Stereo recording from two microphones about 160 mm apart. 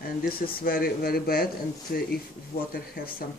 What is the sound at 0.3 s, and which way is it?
Speech, 70° left (ahead or behind).